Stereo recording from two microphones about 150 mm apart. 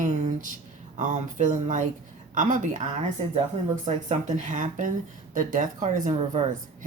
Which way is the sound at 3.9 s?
50° right (ahead or behind).